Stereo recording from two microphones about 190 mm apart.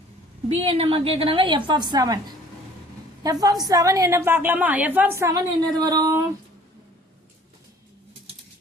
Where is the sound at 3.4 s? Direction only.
20° right (ahead or behind).